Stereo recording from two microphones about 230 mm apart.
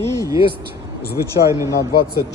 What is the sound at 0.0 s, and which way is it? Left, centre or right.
Vehicle, centre.